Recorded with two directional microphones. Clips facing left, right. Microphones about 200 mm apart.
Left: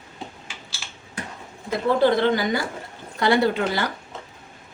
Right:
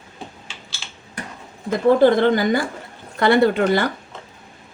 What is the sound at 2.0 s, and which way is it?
A woman's voice, 50° right (ahead or behind).